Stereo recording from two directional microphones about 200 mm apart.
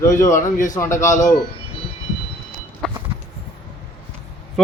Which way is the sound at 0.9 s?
15° left (ahead or behind).